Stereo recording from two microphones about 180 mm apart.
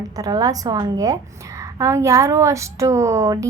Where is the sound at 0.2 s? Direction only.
20° right (ahead or behind).